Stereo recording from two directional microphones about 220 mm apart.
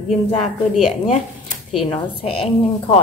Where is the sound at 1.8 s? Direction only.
25° left (ahead or behind).